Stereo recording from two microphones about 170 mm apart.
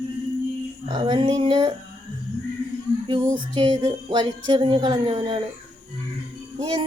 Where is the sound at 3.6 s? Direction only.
30° right (ahead or behind).